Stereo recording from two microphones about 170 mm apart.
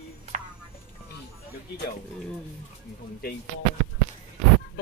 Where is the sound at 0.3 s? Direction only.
45° right (ahead or behind).